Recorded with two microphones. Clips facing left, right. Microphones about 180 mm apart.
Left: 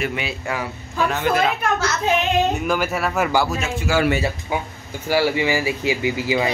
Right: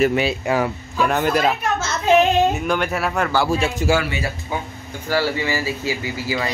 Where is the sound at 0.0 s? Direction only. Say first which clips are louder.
Right 7 dB; 40° right (ahead or behind).